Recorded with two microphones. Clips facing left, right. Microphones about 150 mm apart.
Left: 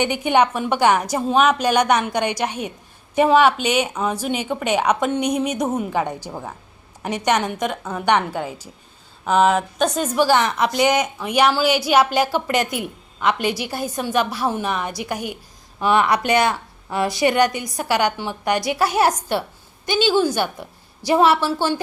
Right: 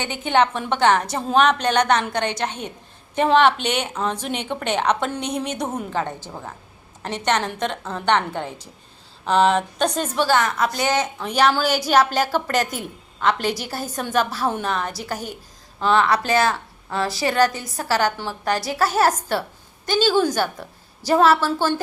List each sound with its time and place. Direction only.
0.0 s a woman's voice: 15° left (ahead or behind)
10.3 s a woman's voice: 20° left (ahead or behind)